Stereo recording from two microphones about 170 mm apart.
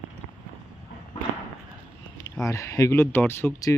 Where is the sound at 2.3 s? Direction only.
20° left (ahead or behind).